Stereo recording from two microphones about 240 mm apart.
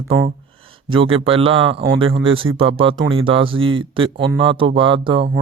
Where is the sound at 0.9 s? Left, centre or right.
Right.